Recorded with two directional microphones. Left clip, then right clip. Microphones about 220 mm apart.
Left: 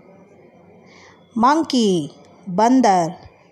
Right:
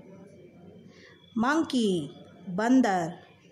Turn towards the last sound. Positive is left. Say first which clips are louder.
# left 10 dB
turn(degrees=20)  # may be behind; listen again after turning